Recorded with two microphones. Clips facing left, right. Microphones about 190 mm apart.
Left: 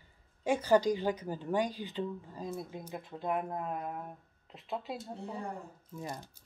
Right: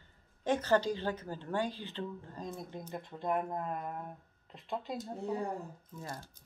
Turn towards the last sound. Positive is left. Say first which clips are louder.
# left 3 dB
turn(degrees=15)  # may be behind; listen again after turning